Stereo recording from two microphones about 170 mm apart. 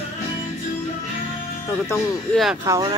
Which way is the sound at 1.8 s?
Centre (ahead or behind).